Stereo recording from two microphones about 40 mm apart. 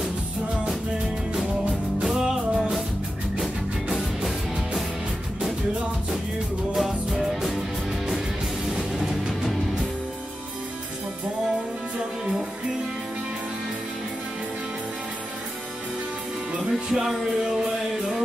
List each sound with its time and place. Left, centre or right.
2.1 s music: centre
6.7 s music: centre
8.7 s music: centre
16.7 s music: centre